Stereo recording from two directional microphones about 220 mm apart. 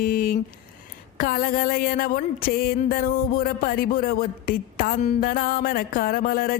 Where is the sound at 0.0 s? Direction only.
40° left (ahead or behind).